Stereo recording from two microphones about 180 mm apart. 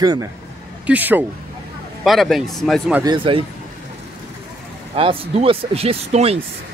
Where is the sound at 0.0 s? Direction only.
20° right (ahead or behind).